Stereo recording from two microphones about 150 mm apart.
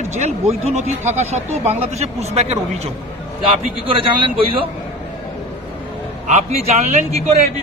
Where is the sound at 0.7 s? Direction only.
50° right (ahead or behind).